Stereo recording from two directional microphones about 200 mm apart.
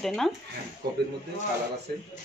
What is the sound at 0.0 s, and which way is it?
Speech, centre (ahead or behind).